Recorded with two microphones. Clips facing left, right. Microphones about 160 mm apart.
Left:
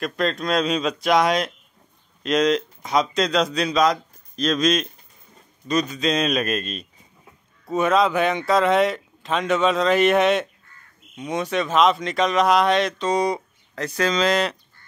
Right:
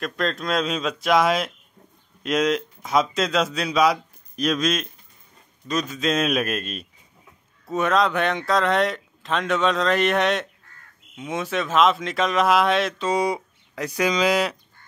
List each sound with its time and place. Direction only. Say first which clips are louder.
0.0 s speech: left 2 dB; centre (ahead or behind)